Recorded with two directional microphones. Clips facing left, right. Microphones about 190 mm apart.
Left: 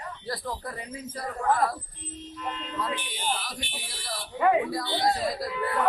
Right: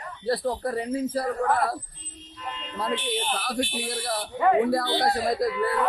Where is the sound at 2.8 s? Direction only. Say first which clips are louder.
Right 6 dB; 30° right (ahead or behind).